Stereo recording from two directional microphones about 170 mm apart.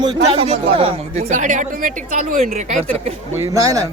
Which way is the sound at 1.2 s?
50° right (ahead or behind).